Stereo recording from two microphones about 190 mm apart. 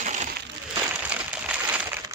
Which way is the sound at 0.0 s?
40° right (ahead or behind).